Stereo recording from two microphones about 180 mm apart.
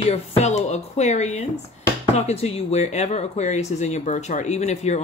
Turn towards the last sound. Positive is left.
turn(degrees=40)  # may be behind; listen again after turning